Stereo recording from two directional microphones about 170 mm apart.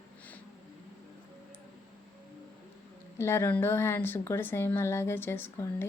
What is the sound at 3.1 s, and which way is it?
A woman's voice, 15° left (ahead or behind).